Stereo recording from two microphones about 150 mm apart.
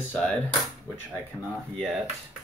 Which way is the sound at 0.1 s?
5° left (ahead or behind).